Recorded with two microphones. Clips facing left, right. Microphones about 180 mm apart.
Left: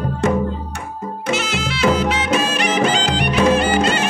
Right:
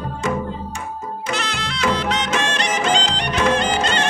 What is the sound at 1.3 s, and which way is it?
Music, 5° left (ahead or behind).